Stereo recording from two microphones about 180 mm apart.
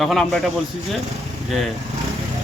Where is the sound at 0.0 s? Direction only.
Centre (ahead or behind).